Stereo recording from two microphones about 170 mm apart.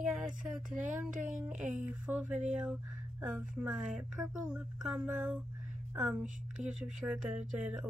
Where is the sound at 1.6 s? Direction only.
10° right (ahead or behind).